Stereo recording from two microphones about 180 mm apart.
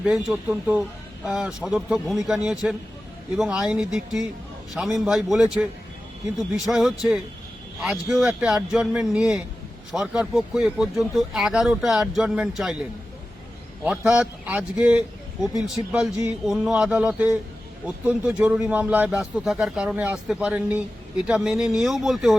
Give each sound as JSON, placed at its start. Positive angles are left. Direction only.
{"t": 0.0, "sound": "speech", "side_deg": -5}
{"t": 13.8, "sound": "speech", "side_deg": -5}